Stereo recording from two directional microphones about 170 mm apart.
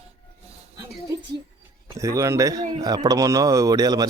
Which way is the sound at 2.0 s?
20° right (ahead or behind).